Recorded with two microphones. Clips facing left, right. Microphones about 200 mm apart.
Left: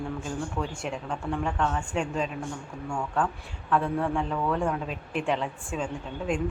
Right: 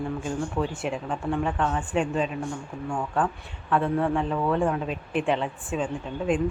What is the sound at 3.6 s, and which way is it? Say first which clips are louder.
A woman's voice: right 2 dB; centre (ahead or behind).